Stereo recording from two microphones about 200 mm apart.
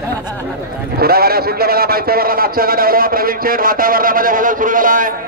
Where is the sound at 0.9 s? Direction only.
50° right (ahead or behind).